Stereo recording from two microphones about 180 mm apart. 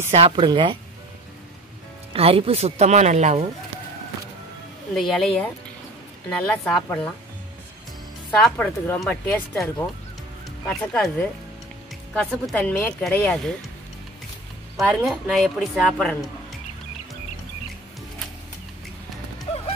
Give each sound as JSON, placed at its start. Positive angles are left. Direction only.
{"t": 0.1, "sound": "speech", "side_deg": -30}
{"t": 2.1, "sound": "speech", "side_deg": -35}
{"t": 4.9, "sound": "a woman's voice", "side_deg": 0}
{"t": 8.4, "sound": "a woman's voice", "side_deg": 5}
{"t": 14.8, "sound": "a woman's voice", "side_deg": -5}